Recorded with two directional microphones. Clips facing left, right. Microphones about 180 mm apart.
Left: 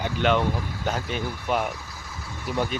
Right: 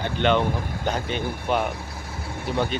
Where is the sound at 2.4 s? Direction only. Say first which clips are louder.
Right 2 dB; 30° right (ahead or behind).